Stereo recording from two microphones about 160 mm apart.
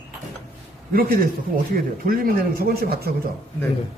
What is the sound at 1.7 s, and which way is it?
Speech, 60° right (ahead or behind).